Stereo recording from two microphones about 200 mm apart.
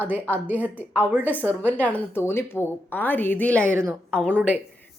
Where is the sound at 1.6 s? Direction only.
10° left (ahead or behind).